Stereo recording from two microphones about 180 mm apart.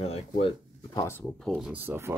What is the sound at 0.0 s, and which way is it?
Speech, 30° left (ahead or behind).